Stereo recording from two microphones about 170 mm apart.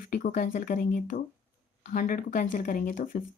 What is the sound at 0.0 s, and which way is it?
Speech, 50° left (ahead or behind).